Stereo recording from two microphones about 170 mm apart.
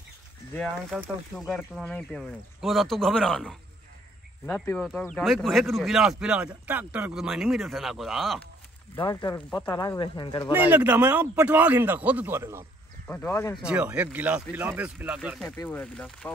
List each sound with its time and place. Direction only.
0.9 s speech: centre (ahead or behind)
4.8 s speech: 5° left (ahead or behind)
9.0 s speech: 25° left (ahead or behind)
9.5 s speech: 5° left (ahead or behind)
9.8 s speech: 25° left (ahead or behind)
10.5 s a man's voice: 10° right (ahead or behind)
13.0 s speech: 15° left (ahead or behind)
13.6 s a man's voice: 5° right (ahead or behind)
15.5 s speech: 10° left (ahead or behind)